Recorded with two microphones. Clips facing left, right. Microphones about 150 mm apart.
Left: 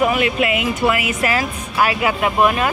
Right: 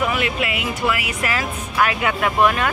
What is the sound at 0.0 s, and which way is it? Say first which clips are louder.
Speech: left 5 dB; 25° left (ahead or behind).